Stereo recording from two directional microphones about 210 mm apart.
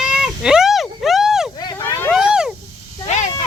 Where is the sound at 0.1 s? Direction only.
5° right (ahead or behind).